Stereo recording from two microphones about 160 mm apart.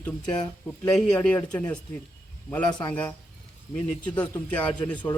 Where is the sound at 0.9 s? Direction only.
10° left (ahead or behind).